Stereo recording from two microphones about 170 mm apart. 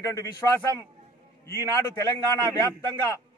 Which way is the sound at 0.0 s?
20° left (ahead or behind).